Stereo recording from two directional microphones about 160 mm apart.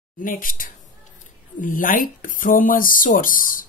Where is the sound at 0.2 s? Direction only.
60° left (ahead or behind).